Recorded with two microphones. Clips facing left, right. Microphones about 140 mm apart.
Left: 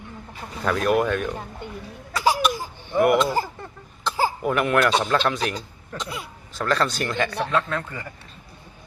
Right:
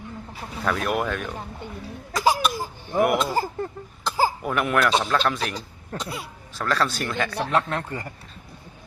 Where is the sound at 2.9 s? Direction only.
Centre (ahead or behind).